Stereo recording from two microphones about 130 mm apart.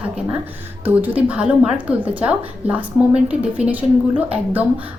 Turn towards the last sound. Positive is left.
turn(degrees=-10)  # may be behind; listen again after turning